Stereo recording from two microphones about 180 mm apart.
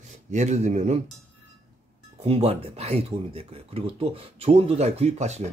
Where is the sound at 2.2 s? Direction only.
35° right (ahead or behind).